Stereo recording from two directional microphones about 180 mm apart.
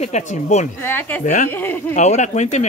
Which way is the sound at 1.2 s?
45° left (ahead or behind).